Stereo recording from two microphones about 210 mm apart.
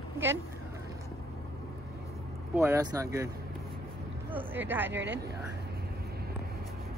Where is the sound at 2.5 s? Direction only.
10° right (ahead or behind).